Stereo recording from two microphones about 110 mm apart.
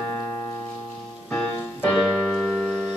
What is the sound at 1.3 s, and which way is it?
Music, 15° left (ahead or behind).